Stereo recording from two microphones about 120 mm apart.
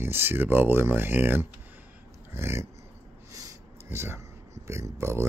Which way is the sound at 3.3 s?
25° right (ahead or behind).